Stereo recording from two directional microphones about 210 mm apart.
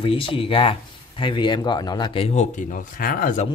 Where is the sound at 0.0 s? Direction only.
25° left (ahead or behind); by 3.4 s 40° left (ahead or behind).